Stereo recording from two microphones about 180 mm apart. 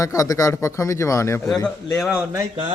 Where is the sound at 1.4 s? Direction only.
Centre (ahead or behind).